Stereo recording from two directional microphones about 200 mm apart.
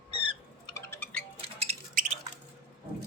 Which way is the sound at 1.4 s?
30° right (ahead or behind).